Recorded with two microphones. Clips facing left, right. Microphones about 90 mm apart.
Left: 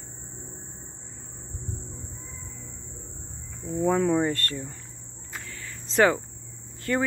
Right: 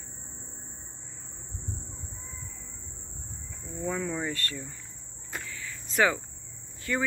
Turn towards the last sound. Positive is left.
turn(degrees=40)  # may be behind; listen again after turning